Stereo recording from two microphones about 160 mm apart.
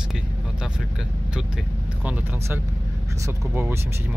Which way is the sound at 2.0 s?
10° right (ahead or behind).